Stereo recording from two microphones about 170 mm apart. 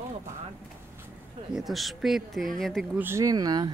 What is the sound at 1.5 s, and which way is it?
Speech, centre (ahead or behind).